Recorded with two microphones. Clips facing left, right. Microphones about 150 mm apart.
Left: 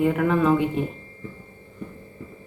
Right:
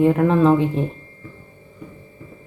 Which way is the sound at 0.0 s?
35° right (ahead or behind).